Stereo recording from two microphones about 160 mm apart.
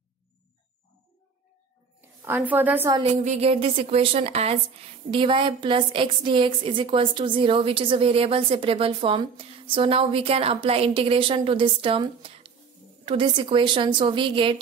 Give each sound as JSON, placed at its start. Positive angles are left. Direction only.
{"t": 2.2, "sound": "a woman's voice", "side_deg": -10}
{"t": 3.0, "sound": "a woman's voice", "side_deg": -40}